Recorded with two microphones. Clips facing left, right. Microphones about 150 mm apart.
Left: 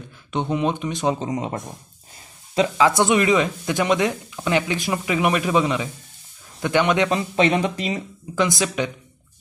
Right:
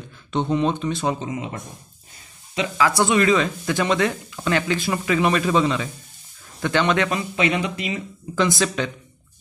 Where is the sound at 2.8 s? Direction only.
20° left (ahead or behind).